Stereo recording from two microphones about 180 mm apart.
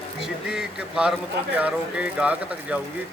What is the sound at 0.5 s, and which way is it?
Speech, 5° right (ahead or behind).